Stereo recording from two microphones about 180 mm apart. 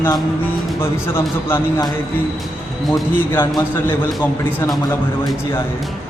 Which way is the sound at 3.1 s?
10° left (ahead or behind).